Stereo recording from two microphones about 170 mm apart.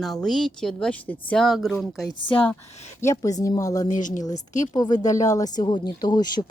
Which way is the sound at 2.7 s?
40° left (ahead or behind).